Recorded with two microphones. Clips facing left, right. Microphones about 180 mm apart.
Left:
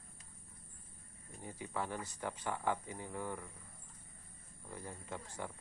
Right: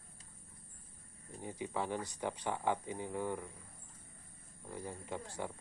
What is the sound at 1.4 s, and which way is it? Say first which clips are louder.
Speech: right 3 dB; 15° right (ahead or behind).